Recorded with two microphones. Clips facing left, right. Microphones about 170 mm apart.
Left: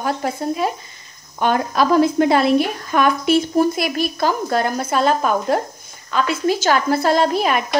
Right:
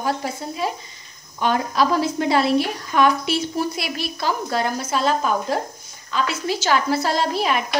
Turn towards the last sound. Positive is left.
turn(degrees=50)  # may be behind; listen again after turning